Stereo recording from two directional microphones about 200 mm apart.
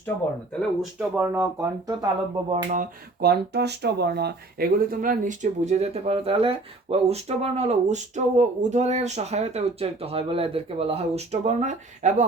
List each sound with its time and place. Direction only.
0.8 s speech: 5° right (ahead or behind)
2.5 s speech: 35° right (ahead or behind)